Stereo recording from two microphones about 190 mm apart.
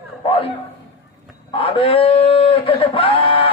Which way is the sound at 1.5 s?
30° left (ahead or behind).